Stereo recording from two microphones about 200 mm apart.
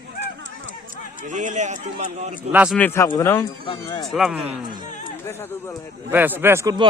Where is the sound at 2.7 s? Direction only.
10° left (ahead or behind).